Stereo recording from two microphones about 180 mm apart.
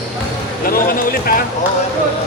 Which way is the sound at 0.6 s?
55° left (ahead or behind).